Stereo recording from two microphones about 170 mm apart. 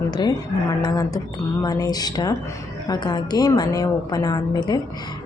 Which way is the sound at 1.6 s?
20° left (ahead or behind).